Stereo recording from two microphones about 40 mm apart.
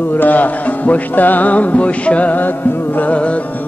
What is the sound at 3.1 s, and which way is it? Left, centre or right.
Music, left.